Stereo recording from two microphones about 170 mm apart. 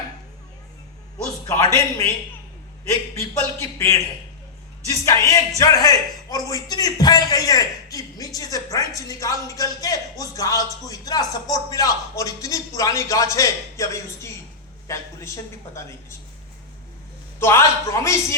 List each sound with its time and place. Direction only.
1.5 s a man's voice: 20° left (ahead or behind)
17.4 s a man's voice: 15° left (ahead or behind)